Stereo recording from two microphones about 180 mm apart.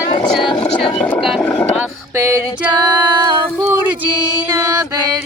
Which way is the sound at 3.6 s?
10° right (ahead or behind).